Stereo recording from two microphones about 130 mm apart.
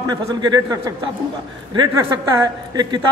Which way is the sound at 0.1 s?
30° right (ahead or behind).